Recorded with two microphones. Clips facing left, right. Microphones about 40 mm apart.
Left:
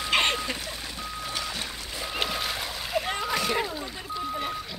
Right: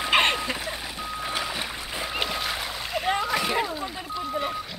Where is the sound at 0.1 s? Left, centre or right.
Centre.